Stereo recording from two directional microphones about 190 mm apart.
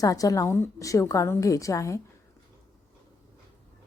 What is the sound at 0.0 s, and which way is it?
A woman's voice, 20° left (ahead or behind).